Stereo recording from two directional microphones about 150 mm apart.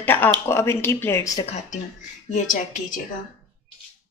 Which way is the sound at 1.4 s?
45° left (ahead or behind).